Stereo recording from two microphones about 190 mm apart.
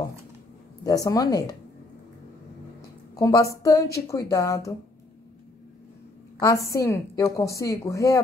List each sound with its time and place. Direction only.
0.8 s a woman's voice: 20° left (ahead or behind)
3.2 s a woman's voice: 15° left (ahead or behind)
6.4 s a woman's voice: 15° left (ahead or behind)